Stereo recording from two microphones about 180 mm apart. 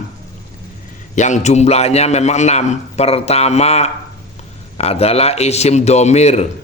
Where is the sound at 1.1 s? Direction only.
40° left (ahead or behind).